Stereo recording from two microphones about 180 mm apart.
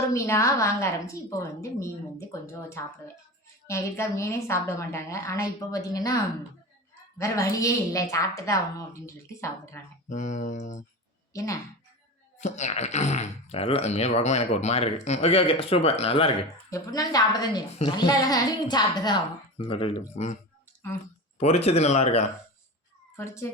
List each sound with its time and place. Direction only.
0.1 s a woman's voice: 15° left (ahead or behind)
7.2 s a woman's voice: 20° left (ahead or behind)
10.1 s speech: 45° left (ahead or behind)
12.4 s speech: 40° left (ahead or behind)
16.6 s a woman's voice: 20° left (ahead or behind); by 22.3 s 35° left (ahead or behind)
23.1 s a woman's voice: 15° left (ahead or behind)